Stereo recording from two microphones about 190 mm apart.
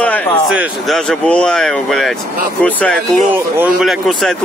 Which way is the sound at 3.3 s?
5° right (ahead or behind).